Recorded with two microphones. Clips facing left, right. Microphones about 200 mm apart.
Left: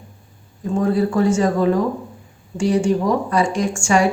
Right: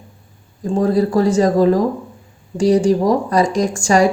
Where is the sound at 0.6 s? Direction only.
35° right (ahead or behind).